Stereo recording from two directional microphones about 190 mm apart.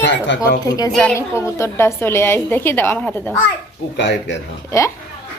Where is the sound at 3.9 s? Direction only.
65° left (ahead or behind).